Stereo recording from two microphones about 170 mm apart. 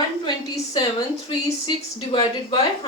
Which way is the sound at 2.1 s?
30° left (ahead or behind).